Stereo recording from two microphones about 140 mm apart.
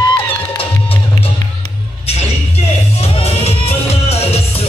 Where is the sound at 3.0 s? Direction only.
45° left (ahead or behind).